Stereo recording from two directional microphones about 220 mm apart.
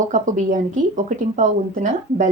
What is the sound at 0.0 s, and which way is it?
Speech, 35° right (ahead or behind).